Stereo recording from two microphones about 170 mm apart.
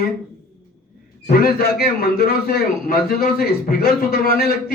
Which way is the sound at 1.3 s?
60° left (ahead or behind).